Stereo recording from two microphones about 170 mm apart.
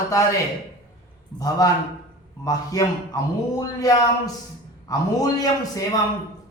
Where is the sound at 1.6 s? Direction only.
20° left (ahead or behind).